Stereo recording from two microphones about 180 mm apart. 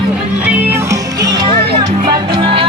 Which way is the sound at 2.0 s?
30° right (ahead or behind).